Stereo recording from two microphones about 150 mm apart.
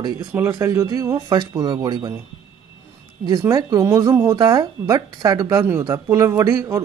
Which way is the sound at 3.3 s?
25° right (ahead or behind).